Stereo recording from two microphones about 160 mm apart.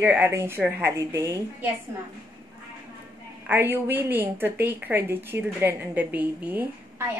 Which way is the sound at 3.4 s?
10° right (ahead or behind).